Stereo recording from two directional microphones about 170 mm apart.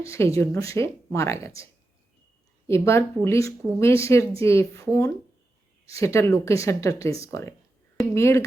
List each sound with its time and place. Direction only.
0.0 s speech: 15° left (ahead or behind)
2.6 s speech: 15° left (ahead or behind)